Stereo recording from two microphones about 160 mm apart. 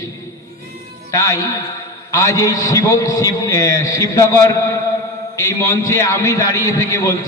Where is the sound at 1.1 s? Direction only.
20° left (ahead or behind).